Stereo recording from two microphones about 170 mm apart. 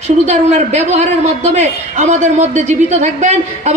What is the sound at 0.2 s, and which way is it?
A man's voice, 40° right (ahead or behind).